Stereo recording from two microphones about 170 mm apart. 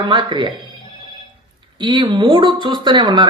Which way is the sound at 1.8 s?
25° right (ahead or behind).